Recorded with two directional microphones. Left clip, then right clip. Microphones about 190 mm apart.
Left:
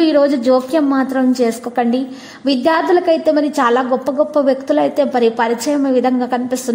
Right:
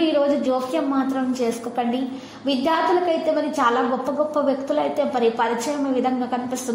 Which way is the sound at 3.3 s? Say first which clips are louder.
Left 6 dB; 30° left (ahead or behind).